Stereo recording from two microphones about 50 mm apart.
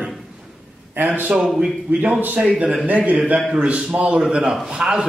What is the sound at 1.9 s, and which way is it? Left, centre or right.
Speech, right.